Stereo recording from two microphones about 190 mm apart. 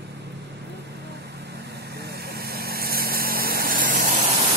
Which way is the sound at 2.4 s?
55° right (ahead or behind).